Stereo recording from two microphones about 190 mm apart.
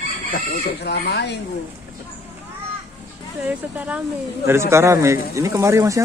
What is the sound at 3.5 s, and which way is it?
Speech, 5° right (ahead or behind).